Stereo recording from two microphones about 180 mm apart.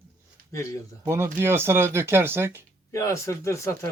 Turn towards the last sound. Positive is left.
turn(degrees=15)  # may be behind; listen again after turning